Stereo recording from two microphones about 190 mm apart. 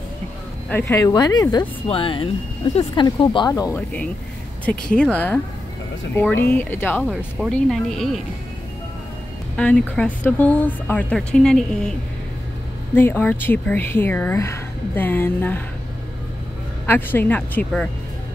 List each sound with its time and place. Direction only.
0.7 s speech: 10° left (ahead or behind)
4.6 s speech: 5° left (ahead or behind)
7.0 s speech: centre (ahead or behind)
9.6 s speech: 5° left (ahead or behind)
12.9 s speech: 10° left (ahead or behind)
16.8 s speech: 10° left (ahead or behind)